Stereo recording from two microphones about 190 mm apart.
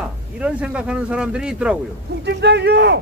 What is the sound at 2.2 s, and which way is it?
Speech, 65° right (ahead or behind).